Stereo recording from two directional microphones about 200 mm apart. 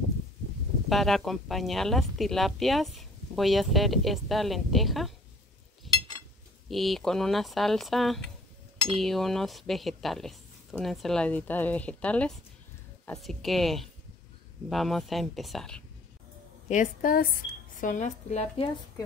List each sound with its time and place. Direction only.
0.8 s speech: centre (ahead or behind)
5.9 s a sound: centre (ahead or behind)
6.7 s speech: centre (ahead or behind)
16.6 s speech: 40° left (ahead or behind)